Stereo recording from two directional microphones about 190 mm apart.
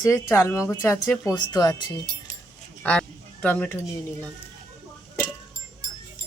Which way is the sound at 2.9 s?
10° left (ahead or behind).